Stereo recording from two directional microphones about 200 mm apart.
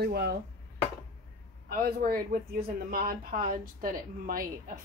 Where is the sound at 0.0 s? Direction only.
55° right (ahead or behind).